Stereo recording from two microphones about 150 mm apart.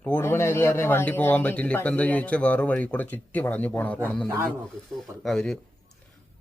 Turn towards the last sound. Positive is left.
turn(degrees=5)  # may be behind; listen again after turning